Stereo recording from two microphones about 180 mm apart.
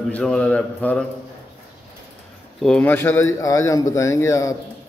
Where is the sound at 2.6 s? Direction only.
5° left (ahead or behind).